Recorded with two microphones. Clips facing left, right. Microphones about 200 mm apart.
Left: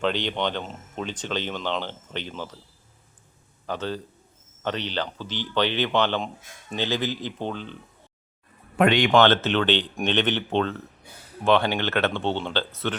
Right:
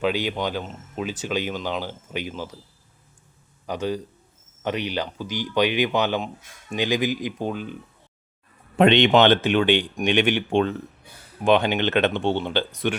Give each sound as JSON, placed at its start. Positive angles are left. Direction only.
{"t": 0.0, "sound": "speech", "side_deg": -10}
{"t": 3.7, "sound": "speech", "side_deg": -10}
{"t": 8.8, "sound": "speech", "side_deg": -25}